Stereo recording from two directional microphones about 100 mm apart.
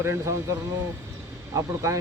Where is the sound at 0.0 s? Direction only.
25° right (ahead or behind).